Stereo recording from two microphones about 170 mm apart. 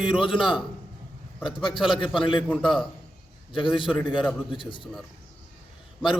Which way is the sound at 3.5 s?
30° left (ahead or behind).